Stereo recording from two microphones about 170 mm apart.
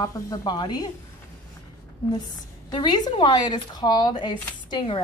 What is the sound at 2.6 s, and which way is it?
Speech, 25° left (ahead or behind).